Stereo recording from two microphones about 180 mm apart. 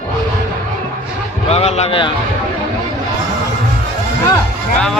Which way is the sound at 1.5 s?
35° left (ahead or behind).